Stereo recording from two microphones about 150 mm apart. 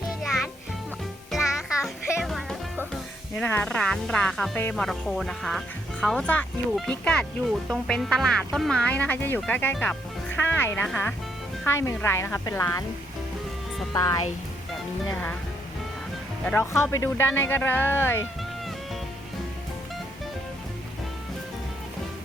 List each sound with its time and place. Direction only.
0.1 s music: centre (ahead or behind)
2.9 s speech: 10° left (ahead or behind)
13.9 s speech: 20° left (ahead or behind)
16.5 s speech: 15° left (ahead or behind)